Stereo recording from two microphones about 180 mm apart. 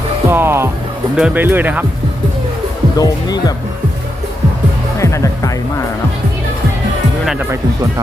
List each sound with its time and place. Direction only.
0.3 s speech: 10° right (ahead or behind)
3.0 s speech: 20° left (ahead or behind)
4.9 s music: 15° left (ahead or behind)
7.3 s speech: 10° right (ahead or behind)